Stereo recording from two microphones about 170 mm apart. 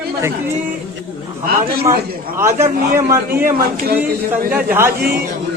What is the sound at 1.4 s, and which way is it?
Speech, 65° right (ahead or behind).